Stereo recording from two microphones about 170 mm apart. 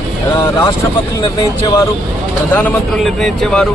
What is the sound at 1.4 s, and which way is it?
Speech, 20° left (ahead or behind).